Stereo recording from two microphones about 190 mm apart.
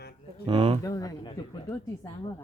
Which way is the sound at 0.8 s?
20° left (ahead or behind).